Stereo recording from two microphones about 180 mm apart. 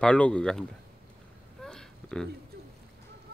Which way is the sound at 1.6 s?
5° left (ahead or behind).